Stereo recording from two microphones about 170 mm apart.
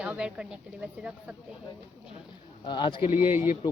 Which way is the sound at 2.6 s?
30° left (ahead or behind).